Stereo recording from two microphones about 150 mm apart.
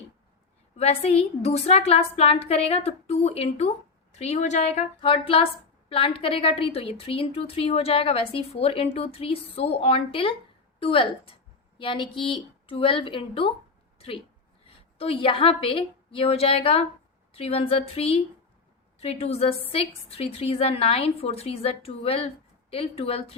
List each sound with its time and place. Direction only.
0.8 s a woman's voice: 45° left (ahead or behind)
14.6 s a woman's voice: 40° left (ahead or behind)